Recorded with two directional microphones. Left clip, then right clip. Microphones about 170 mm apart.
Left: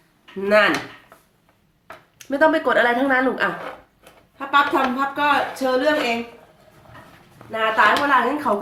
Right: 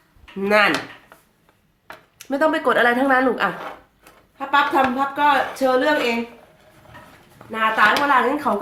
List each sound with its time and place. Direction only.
0.4 s speech: 20° right (ahead or behind)
2.1 s a woman's voice: 25° right (ahead or behind)
4.4 s speech: 10° right (ahead or behind)
7.3 s speech: 20° right (ahead or behind)